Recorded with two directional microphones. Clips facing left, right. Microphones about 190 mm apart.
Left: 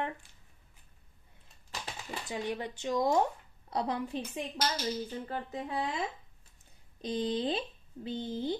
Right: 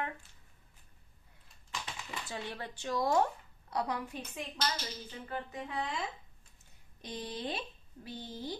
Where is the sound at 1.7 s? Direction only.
40° left (ahead or behind).